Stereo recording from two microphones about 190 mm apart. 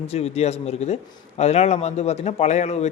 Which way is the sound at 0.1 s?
35° left (ahead or behind).